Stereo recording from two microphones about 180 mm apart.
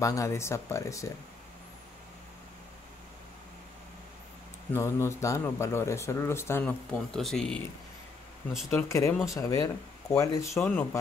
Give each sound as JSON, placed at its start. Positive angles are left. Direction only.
{"t": 0.0, "sound": "speech", "side_deg": 15}
{"t": 4.7, "sound": "speech", "side_deg": 15}
{"t": 8.6, "sound": "speech", "side_deg": 15}